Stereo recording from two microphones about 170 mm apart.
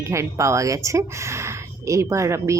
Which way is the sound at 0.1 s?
15° right (ahead or behind).